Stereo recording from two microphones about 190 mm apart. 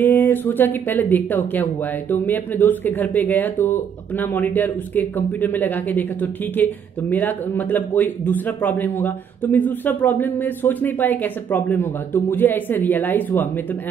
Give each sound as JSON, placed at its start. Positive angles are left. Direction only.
{"t": 0.0, "sound": "speech", "side_deg": 10}